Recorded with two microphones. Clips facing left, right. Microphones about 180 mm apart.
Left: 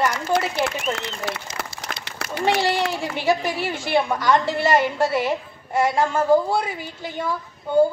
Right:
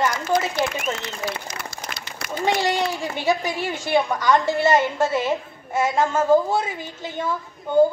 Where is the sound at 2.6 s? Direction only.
15° right (ahead or behind).